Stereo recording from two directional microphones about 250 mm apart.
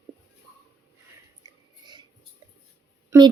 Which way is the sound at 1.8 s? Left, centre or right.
Centre.